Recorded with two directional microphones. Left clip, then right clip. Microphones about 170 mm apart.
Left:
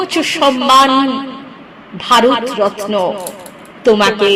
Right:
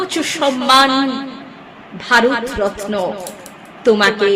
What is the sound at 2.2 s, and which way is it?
A man's voice, 15° left (ahead or behind).